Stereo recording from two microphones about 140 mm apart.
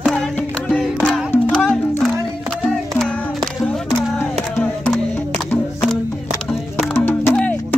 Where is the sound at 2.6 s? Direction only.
5° left (ahead or behind).